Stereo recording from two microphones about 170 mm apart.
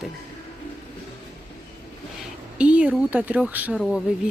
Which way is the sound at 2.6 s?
5° right (ahead or behind).